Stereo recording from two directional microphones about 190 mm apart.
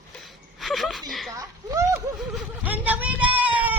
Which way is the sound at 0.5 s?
Centre (ahead or behind).